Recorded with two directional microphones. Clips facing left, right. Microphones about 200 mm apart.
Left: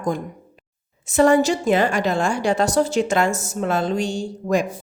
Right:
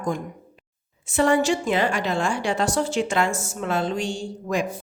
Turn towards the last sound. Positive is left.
turn(degrees=40)  # may be behind; listen again after turning